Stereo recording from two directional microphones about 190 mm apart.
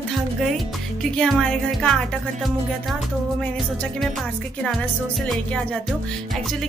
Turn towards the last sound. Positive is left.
turn(degrees=0)  # may be behind; listen again after turning